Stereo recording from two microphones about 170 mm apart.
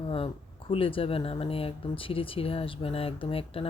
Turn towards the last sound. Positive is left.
turn(degrees=35)  # may be behind; listen again after turning